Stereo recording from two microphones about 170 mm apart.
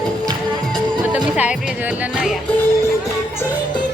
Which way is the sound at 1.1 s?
5° right (ahead or behind).